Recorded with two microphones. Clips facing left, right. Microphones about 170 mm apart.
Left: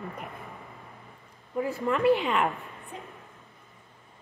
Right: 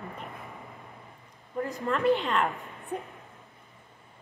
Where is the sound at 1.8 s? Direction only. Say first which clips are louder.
Left 2 dB; 5° left (ahead or behind).